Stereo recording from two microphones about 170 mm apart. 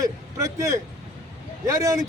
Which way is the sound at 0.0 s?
20° right (ahead or behind).